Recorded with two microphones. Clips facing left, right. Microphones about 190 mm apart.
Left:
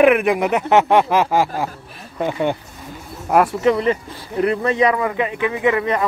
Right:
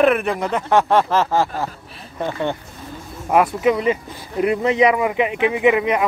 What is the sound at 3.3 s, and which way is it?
Speech, 5° right (ahead or behind).